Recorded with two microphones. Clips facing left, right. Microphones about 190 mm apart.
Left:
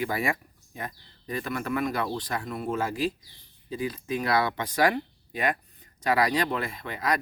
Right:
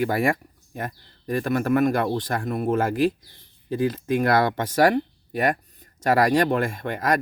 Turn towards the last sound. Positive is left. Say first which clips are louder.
# right 5 dB
turn(degrees=-50)  # may be behind; listen again after turning